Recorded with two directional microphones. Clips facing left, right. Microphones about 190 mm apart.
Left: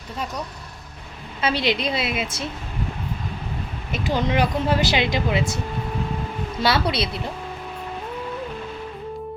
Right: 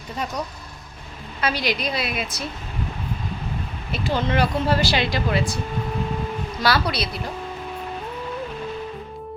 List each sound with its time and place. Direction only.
1.4 s a woman's voice: 25° left (ahead or behind)
3.9 s speech: 15° left (ahead or behind)
6.6 s a woman's voice: 25° left (ahead or behind)